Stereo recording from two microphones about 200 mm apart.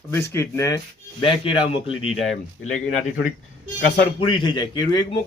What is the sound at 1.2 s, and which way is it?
Speech, 25° left (ahead or behind).